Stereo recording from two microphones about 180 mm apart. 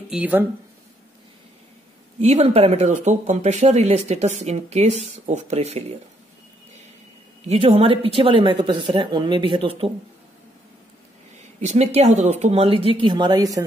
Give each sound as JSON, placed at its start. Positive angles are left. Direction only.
{"t": 0.1, "sound": "speech", "side_deg": -10}
{"t": 2.1, "sound": "speech", "side_deg": -35}
{"t": 7.4, "sound": "speech", "side_deg": -35}
{"t": 11.6, "sound": "speech", "side_deg": -35}